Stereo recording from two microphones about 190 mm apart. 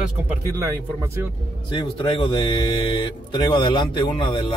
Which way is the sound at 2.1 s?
25° left (ahead or behind).